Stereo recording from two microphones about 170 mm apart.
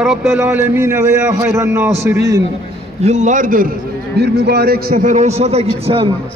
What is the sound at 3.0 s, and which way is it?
Speech, 45° right (ahead or behind).